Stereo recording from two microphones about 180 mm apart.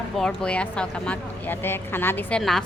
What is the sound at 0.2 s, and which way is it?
A woman's voice, 5° left (ahead or behind).